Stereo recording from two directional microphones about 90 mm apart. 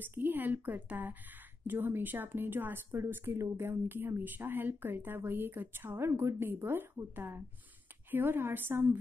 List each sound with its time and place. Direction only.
0.0 s speech: 20° right (ahead or behind)